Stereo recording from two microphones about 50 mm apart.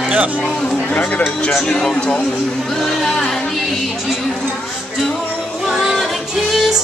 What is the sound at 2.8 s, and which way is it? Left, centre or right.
Music, centre.